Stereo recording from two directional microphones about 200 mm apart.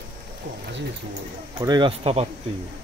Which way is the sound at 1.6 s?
20° right (ahead or behind).